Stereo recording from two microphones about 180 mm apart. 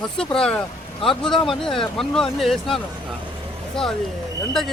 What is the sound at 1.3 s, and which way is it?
Speech, 25° left (ahead or behind).